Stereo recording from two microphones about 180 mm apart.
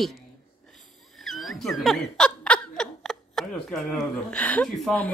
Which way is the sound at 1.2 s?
Centre (ahead or behind).